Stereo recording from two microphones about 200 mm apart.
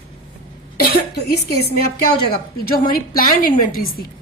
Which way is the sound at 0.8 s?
50° left (ahead or behind).